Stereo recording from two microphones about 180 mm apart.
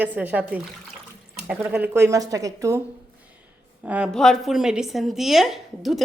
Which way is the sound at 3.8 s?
5° right (ahead or behind).